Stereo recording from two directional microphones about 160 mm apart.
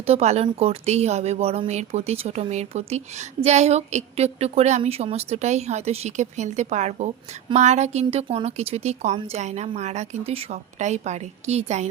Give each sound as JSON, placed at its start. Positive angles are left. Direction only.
{"t": 0.0, "sound": "speech", "side_deg": -40}